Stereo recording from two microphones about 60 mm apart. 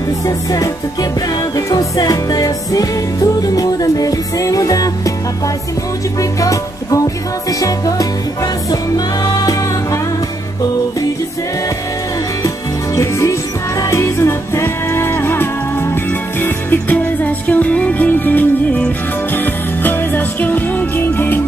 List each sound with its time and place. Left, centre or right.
0.3 s music: left
1.7 s music: left
6.4 s music: left
7.4 s music: left
12.4 s music: left